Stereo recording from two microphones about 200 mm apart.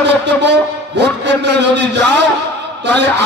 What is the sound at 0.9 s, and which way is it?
A man's voice, 60° right (ahead or behind).